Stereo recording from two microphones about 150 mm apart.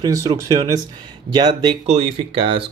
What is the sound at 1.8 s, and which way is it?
Speech, 45° right (ahead or behind).